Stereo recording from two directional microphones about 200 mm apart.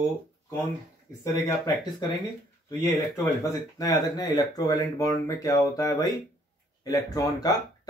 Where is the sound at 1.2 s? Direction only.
15° left (ahead or behind).